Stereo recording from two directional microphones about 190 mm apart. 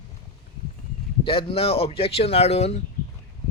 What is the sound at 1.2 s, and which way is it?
Speech, 30° left (ahead or behind).